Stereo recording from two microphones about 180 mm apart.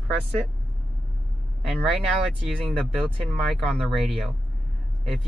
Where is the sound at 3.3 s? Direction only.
Centre (ahead or behind).